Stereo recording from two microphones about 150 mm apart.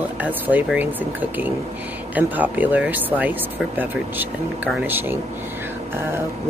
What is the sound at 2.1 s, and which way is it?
Speech, 10° right (ahead or behind).